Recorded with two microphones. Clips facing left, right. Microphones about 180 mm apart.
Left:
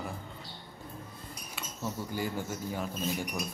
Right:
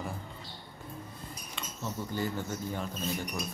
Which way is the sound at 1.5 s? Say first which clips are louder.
Left 1 dB; 10° left (ahead or behind).